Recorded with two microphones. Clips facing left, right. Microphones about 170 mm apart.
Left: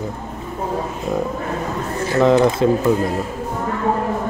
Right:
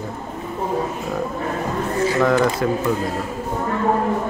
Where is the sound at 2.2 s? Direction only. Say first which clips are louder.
Left 6 dB; 20° left (ahead or behind).